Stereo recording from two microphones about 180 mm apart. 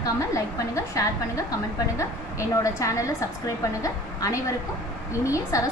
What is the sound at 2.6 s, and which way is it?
A woman's voice, 15° left (ahead or behind).